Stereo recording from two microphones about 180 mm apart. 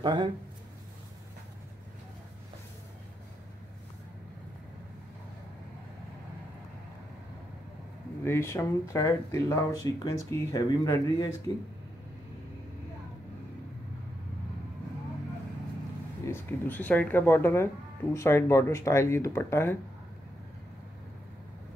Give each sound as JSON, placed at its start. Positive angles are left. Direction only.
{"t": 0.0, "sound": "speech", "side_deg": -25}
{"t": 8.2, "sound": "speech", "side_deg": 15}
{"t": 16.3, "sound": "speech", "side_deg": 10}